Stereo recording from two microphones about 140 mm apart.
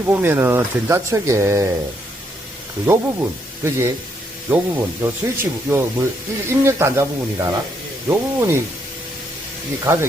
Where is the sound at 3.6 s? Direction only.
20° right (ahead or behind).